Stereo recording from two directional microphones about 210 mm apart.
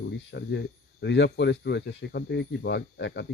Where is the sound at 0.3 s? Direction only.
55° left (ahead or behind).